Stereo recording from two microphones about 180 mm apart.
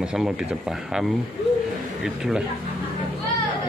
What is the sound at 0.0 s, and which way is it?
Speech, 5° right (ahead or behind).